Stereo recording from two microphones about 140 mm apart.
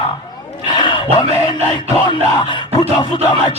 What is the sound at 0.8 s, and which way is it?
Music, 35° left (ahead or behind).